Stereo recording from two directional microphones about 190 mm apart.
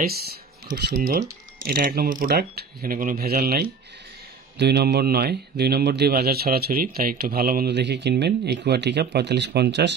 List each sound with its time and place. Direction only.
0.8 s a man's voice: 55° right (ahead or behind)